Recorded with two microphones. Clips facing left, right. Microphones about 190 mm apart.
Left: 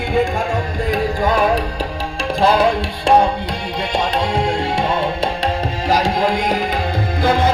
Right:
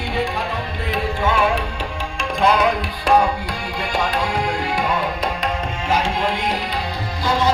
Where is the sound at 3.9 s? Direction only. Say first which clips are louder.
Left 3 dB; 25° left (ahead or behind).